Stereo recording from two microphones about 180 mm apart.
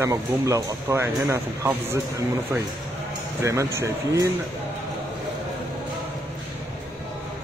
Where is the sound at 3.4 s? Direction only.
15° right (ahead or behind).